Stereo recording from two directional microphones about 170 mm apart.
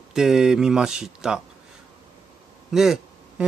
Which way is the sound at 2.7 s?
Centre (ahead or behind).